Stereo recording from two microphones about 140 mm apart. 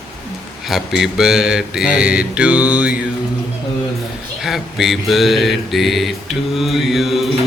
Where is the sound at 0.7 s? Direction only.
Centre (ahead or behind).